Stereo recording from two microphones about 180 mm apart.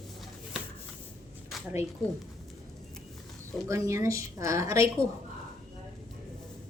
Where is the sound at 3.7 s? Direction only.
15° right (ahead or behind).